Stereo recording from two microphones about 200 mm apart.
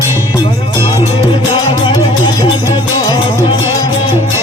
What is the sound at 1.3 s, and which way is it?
Music, 25° left (ahead or behind).